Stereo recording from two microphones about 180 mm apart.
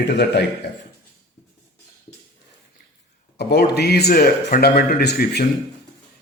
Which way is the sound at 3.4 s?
65° left (ahead or behind).